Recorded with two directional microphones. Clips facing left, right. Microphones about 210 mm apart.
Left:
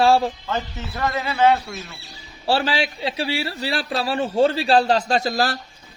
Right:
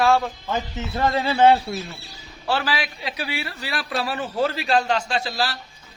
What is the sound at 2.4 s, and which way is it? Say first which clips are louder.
A man's voice: left 4 dB; 30° left (ahead or behind).